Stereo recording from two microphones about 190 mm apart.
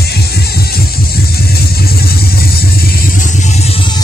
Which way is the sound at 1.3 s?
55° left (ahead or behind).